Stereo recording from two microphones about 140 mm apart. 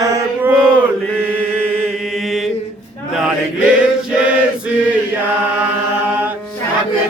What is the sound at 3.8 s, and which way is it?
Choir, 10° right (ahead or behind).